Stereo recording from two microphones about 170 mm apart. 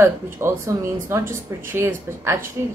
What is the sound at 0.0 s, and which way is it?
A woman's voice, 15° right (ahead or behind).